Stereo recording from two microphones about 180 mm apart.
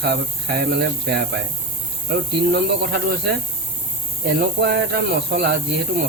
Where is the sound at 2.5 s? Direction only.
60° right (ahead or behind).